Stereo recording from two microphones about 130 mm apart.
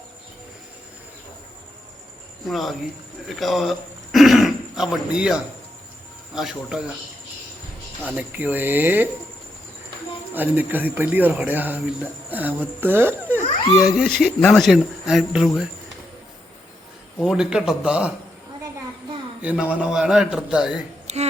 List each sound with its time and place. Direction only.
2.5 s a man's voice: centre (ahead or behind)
8.0 s speech: 10° right (ahead or behind)
10.3 s speech: 15° right (ahead or behind)
13.8 s speech: centre (ahead or behind)
17.2 s speech: 5° right (ahead or behind)
19.4 s speech: 10° right (ahead or behind)
21.1 s a sound: 60° right (ahead or behind)